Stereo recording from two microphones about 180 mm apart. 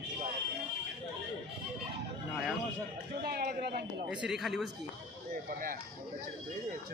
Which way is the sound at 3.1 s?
60° right (ahead or behind).